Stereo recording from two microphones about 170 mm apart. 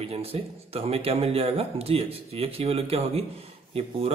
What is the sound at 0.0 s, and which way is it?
Speech, 35° right (ahead or behind).